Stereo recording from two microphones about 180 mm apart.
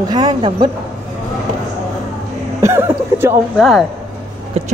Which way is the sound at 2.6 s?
15° right (ahead or behind).